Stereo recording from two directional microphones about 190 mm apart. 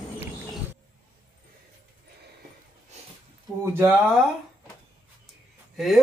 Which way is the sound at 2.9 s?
35° right (ahead or behind).